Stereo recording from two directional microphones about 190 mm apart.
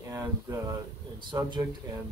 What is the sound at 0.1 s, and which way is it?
A man's voice, 20° right (ahead or behind).